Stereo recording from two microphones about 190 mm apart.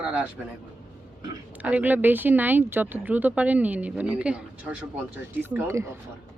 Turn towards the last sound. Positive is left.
turn(degrees=-15)  # may be behind; listen again after turning